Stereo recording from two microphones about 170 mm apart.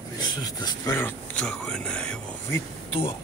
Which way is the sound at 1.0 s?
5° left (ahead or behind).